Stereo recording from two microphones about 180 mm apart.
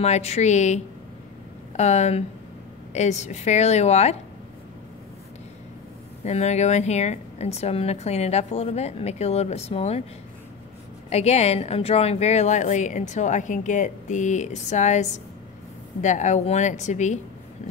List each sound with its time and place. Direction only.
0.0 s a woman's voice: 35° left (ahead or behind)
1.8 s a woman's voice: 40° left (ahead or behind)
6.2 s a woman's voice: 35° left (ahead or behind)
11.1 s a woman's voice: 35° left (ahead or behind)